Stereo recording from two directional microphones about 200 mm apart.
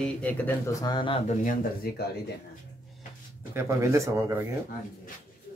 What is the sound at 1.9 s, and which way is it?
Speech, 50° left (ahead or behind).